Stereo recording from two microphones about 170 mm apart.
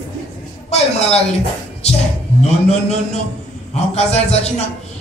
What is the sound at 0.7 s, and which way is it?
Speech, 40° left (ahead or behind).